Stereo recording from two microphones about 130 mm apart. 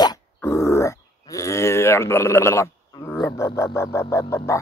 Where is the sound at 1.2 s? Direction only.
25° left (ahead or behind).